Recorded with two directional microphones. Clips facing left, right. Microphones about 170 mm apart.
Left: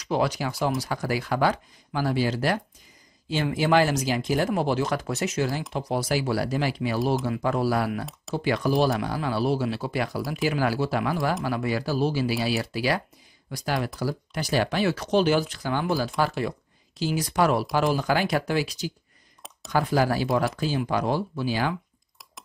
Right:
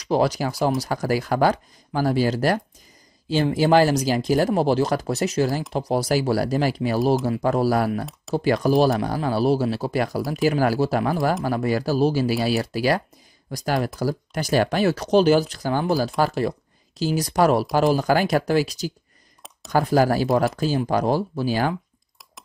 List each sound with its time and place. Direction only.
0.0 s speech: 35° right (ahead or behind)